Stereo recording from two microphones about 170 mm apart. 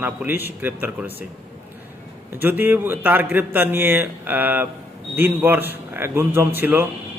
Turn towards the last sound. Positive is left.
turn(degrees=-10)  # may be behind; listen again after turning